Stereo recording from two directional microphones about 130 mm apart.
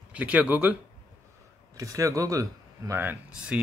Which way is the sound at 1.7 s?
25° right (ahead or behind).